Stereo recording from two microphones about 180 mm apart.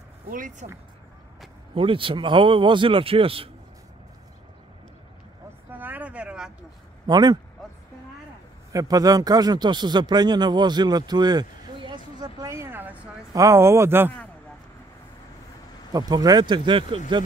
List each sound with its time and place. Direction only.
0.3 s speech: 50° right (ahead or behind)
1.8 s speech: 30° right (ahead or behind)
5.7 s a sound: 10° right (ahead or behind)
7.1 s speech: 25° right (ahead or behind)
8.7 s speech: 20° right (ahead or behind)
15.9 s speech: 20° right (ahead or behind)